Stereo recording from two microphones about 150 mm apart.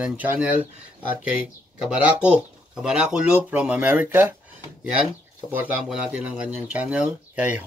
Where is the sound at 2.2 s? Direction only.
5° right (ahead or behind).